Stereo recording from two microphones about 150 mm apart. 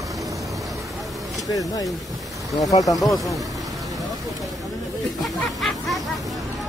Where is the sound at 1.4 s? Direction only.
25° left (ahead or behind).